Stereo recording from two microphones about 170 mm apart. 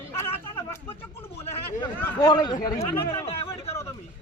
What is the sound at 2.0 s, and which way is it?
Speech, 25° left (ahead or behind).